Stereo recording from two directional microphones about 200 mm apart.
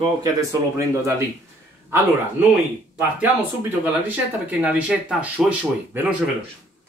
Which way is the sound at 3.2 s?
10° right (ahead or behind).